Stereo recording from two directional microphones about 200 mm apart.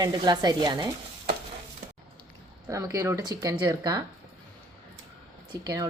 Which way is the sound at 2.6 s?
15° right (ahead or behind).